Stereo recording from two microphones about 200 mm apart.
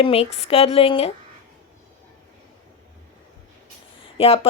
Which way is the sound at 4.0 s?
30° left (ahead or behind).